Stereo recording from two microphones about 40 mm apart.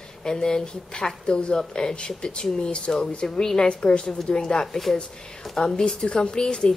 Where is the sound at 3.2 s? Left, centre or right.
Centre.